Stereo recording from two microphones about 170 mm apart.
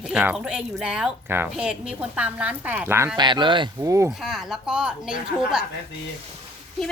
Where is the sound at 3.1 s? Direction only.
25° right (ahead or behind).